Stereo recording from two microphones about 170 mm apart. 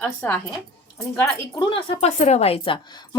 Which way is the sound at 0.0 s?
10° left (ahead or behind).